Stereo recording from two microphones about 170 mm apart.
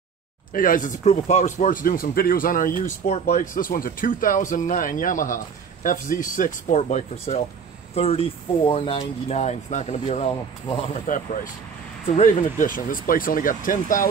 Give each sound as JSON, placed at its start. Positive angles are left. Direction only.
{"t": 0.5, "sound": "speech", "side_deg": 55}
{"t": 3.1, "sound": "speech", "side_deg": 45}
{"t": 11.1, "sound": "speech", "side_deg": 50}
{"t": 12.1, "sound": "speech", "side_deg": 40}